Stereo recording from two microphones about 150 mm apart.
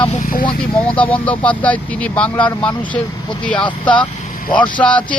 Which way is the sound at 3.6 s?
30° left (ahead or behind).